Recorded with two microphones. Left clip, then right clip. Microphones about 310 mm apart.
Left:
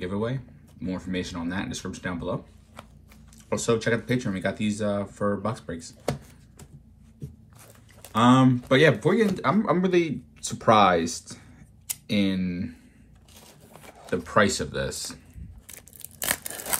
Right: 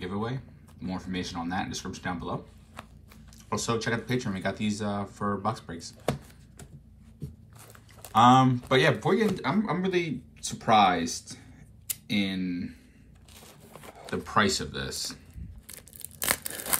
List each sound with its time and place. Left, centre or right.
0.0 s speech: centre
8.2 s speech: centre
13.7 s speech: centre
16.3 s a sound: centre